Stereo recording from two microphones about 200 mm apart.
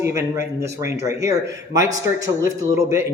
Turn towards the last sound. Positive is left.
turn(degrees=-15)  # may be behind; listen again after turning